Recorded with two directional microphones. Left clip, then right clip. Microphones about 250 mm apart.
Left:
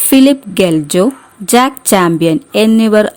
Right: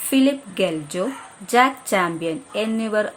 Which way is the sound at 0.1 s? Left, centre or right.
Left.